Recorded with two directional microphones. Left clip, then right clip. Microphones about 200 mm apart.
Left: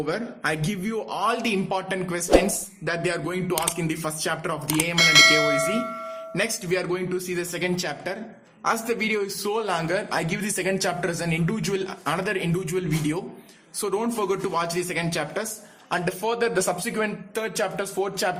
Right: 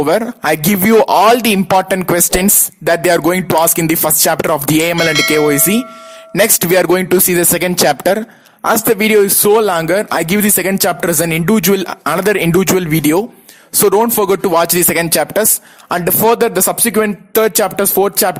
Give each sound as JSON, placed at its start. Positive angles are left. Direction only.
{"t": 0.0, "sound": "speech", "side_deg": -50}
{"t": 4.9, "sound": "tubular bells", "side_deg": 0}
{"t": 6.3, "sound": "speech", "side_deg": -50}